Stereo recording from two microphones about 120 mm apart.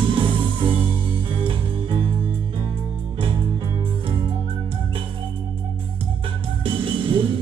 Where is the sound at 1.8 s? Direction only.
45° right (ahead or behind).